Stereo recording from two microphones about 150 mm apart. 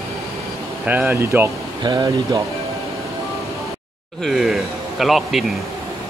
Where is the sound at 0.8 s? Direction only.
10° right (ahead or behind); by 2.4 s 25° right (ahead or behind).